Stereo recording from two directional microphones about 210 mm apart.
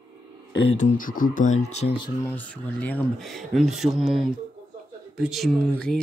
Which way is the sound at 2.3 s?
5° left (ahead or behind).